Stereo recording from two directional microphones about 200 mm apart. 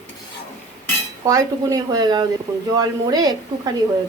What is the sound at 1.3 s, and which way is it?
Speech, 15° right (ahead or behind).